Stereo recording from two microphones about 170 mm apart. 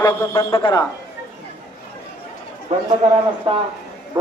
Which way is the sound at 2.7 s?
45° right (ahead or behind).